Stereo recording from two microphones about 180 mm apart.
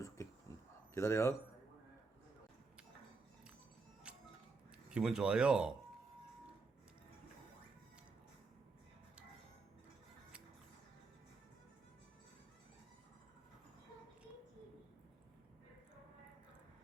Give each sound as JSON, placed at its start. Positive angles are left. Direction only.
{"t": 0.2, "sound": "a sound", "side_deg": 15}
{"t": 0.9, "sound": "speech", "side_deg": 15}
{"t": 4.1, "sound": "music", "side_deg": -5}
{"t": 4.9, "sound": "speech", "side_deg": -5}